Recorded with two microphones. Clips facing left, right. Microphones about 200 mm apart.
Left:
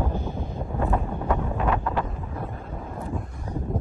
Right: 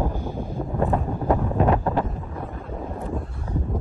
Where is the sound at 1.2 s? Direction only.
35° right (ahead or behind).